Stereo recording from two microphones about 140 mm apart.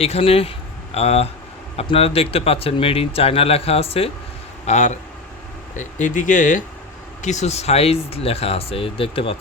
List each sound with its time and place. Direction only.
0.0 s speech: 45° left (ahead or behind)
4.6 s speech: 55° left (ahead or behind)